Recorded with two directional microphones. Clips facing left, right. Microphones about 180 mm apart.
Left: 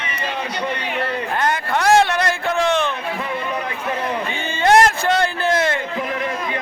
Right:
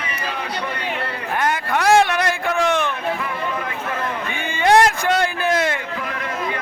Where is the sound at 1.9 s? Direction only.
15° right (ahead or behind).